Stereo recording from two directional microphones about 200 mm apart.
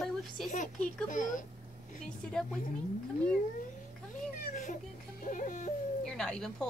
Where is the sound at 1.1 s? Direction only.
40° left (ahead or behind).